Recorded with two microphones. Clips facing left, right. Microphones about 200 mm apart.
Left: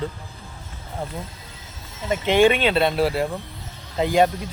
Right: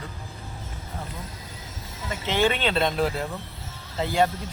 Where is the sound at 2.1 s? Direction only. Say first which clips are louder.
Left 7 dB; 15° left (ahead or behind).